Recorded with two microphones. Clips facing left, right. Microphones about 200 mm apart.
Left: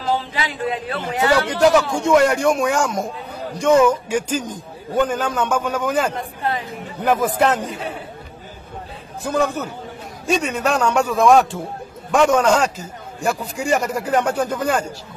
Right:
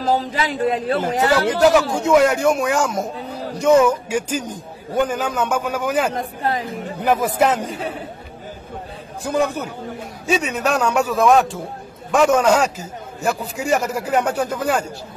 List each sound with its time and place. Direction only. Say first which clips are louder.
0.0 s a man's voice: right 3 dB; 40° right (ahead or behind)
1.6 s a man's voice: even; centre (ahead or behind)
6.1 s speech: right 2 dB; 40° right (ahead or behind)
7.0 s a man's voice: even; 10° right (ahead or behind)
9.3 s a man's voice: even; 10° right (ahead or behind)